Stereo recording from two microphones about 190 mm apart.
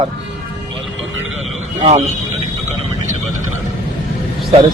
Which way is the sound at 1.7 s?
35° right (ahead or behind).